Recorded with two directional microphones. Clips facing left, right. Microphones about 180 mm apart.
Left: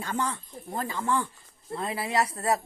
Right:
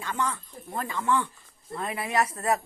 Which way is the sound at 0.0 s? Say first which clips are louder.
Even; 35° left (ahead or behind).